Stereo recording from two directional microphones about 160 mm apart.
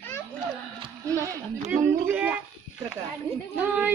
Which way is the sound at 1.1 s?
20° right (ahead or behind).